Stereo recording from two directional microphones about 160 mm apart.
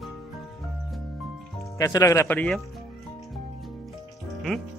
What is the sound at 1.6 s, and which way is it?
Speech, 20° left (ahead or behind).